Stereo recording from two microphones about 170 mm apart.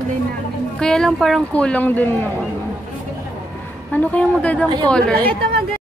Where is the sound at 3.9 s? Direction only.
10° left (ahead or behind).